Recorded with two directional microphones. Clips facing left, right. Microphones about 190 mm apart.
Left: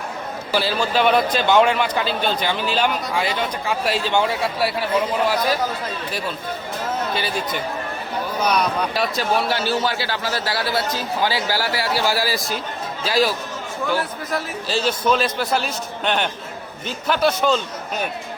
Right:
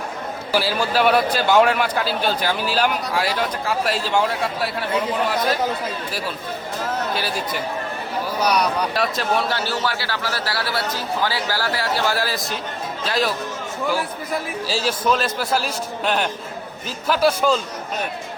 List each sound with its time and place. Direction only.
0.5 s a man's voice: 10° right (ahead or behind)
7.1 s speech: centre (ahead or behind)
8.4 s a man's voice: centre (ahead or behind)
9.5 s a man's voice: 15° left (ahead or behind)
14.7 s a man's voice: 5° right (ahead or behind)